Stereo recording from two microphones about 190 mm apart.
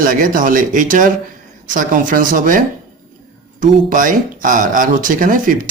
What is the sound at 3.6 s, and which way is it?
Speech, 45° right (ahead or behind).